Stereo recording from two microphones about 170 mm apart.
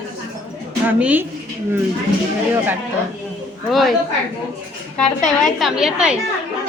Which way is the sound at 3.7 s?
Centre (ahead or behind).